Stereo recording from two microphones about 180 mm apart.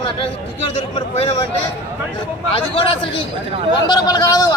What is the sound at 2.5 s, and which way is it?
A man's voice, 30° left (ahead or behind).